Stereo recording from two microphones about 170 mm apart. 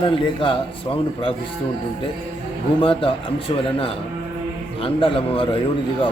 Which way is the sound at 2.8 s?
30° left (ahead or behind).